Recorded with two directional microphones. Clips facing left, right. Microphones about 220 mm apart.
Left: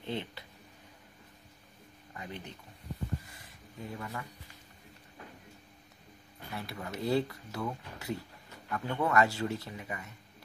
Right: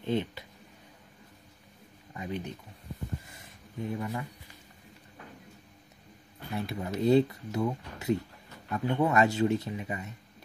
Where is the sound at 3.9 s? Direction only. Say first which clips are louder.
Right 6 dB; 20° right (ahead or behind).